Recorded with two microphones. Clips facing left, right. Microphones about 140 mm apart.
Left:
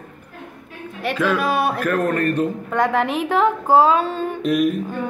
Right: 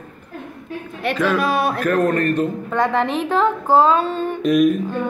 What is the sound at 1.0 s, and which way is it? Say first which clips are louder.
A man's voice: right 1 dB; 5° left (ahead or behind).